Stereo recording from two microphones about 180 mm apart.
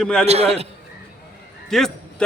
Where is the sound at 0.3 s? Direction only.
35° right (ahead or behind).